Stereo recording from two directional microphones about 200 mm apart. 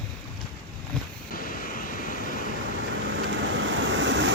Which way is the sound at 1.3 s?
45° left (ahead or behind).